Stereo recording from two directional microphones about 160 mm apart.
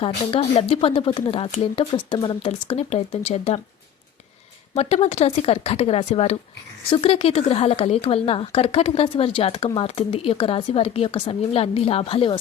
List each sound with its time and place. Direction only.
0.0 s speech: 35° left (ahead or behind)
4.7 s speech: 40° left (ahead or behind)